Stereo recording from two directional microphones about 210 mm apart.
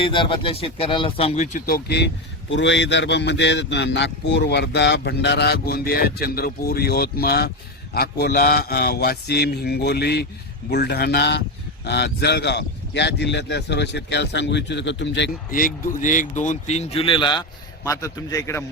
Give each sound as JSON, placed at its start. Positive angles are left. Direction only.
{"t": 0.0, "sound": "speech", "side_deg": 25}
{"t": 2.5, "sound": "a man's voice", "side_deg": 60}